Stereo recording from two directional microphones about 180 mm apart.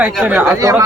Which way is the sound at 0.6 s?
20° right (ahead or behind).